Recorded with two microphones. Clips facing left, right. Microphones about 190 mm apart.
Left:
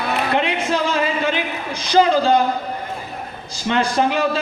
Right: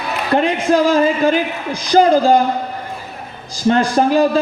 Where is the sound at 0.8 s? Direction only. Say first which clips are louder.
Right 7 dB; 40° right (ahead or behind).